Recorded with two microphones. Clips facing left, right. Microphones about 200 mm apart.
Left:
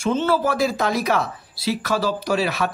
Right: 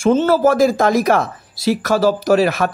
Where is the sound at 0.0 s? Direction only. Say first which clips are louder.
Right 7 dB; 45° right (ahead or behind).